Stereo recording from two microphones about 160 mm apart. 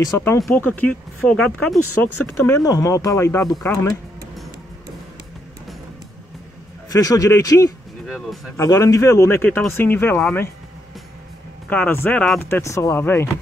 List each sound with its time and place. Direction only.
0.0 s speech: 20° left (ahead or behind); by 1.8 s 5° left (ahead or behind)
2.2 s speech: 15° left (ahead or behind)
6.9 s speech: 20° left (ahead or behind)
11.7 s speech: 10° left (ahead or behind)